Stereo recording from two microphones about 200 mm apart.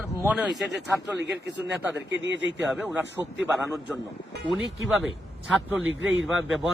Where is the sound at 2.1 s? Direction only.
65° right (ahead or behind).